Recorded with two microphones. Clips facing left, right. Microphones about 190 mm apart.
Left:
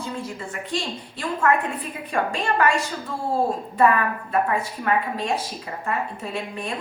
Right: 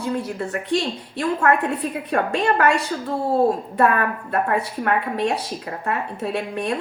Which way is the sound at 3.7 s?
65° right (ahead or behind).